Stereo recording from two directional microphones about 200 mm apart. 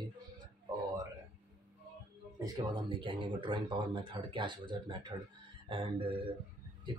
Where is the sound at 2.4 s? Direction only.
25° right (ahead or behind).